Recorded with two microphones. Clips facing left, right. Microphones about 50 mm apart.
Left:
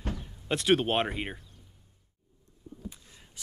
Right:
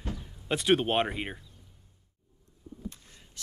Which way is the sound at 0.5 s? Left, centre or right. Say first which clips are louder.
Even; centre.